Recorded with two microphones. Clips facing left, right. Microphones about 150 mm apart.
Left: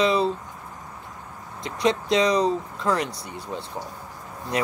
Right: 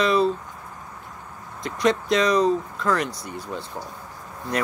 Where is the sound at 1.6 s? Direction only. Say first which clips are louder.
Right 1 dB; 25° left (ahead or behind).